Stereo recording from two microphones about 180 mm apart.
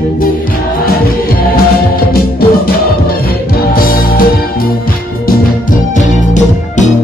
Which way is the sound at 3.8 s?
55° left (ahead or behind).